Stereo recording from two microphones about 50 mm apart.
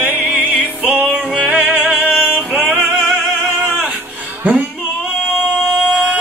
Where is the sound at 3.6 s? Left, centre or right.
Right.